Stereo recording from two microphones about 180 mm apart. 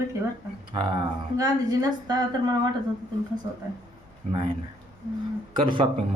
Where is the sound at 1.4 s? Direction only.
20° right (ahead or behind).